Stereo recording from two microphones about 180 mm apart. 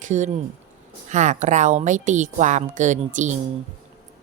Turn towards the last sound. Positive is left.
turn(degrees=-45)  # may be behind; listen again after turning